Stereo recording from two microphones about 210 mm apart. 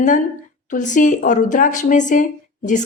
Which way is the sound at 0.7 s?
35° left (ahead or behind).